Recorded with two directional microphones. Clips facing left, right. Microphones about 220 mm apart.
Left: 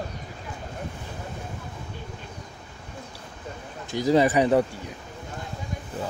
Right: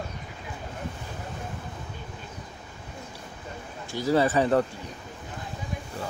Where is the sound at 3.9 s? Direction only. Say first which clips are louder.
Left 3 dB; 15° left (ahead or behind).